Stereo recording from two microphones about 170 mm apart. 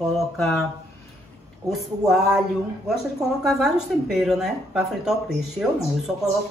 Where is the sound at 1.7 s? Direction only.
Centre (ahead or behind).